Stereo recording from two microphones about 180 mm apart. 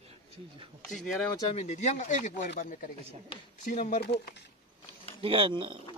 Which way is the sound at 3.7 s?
40° left (ahead or behind).